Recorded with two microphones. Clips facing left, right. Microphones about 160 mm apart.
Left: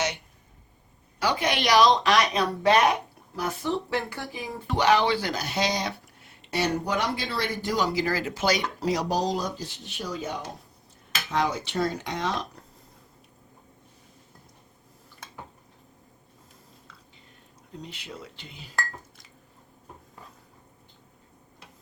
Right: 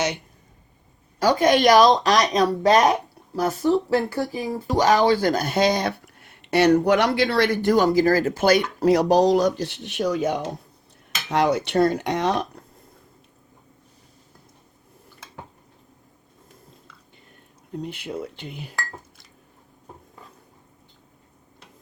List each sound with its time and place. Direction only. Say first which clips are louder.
1.2 s speech: right 9 dB; 45° right (ahead or behind); by 12.5 s 60° right (ahead or behind)
17.7 s speech: right 9 dB; 55° right (ahead or behind)